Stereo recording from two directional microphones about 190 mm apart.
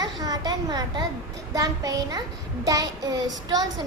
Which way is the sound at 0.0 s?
20° right (ahead or behind).